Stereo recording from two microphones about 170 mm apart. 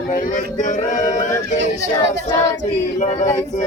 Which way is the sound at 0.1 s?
50° left (ahead or behind).